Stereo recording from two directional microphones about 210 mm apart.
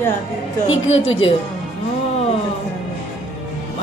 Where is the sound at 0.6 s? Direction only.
65° left (ahead or behind).